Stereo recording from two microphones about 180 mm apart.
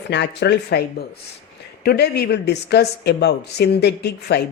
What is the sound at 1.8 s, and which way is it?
A woman's voice, 65° left (ahead or behind).